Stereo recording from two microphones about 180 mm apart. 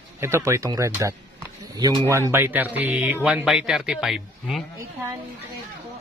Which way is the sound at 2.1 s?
15° right (ahead or behind).